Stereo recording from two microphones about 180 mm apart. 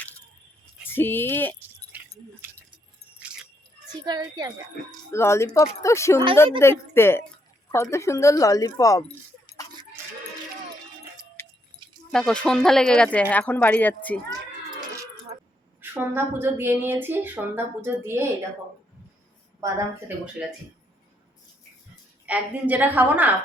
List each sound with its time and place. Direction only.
0.9 s speech: 10° left (ahead or behind)
1.9 s keys jangling: 10° right (ahead or behind)
4.0 s a child's voice: 20° right (ahead or behind)
5.1 s speech: 15° left (ahead or behind)
9.0 s keys jangling: 25° left (ahead or behind)
12.1 s speech: 5° left (ahead or behind)
15.8 s speech: 10° right (ahead or behind)
19.5 s speech: 10° right (ahead or behind)
22.3 s speech: 10° right (ahead or behind)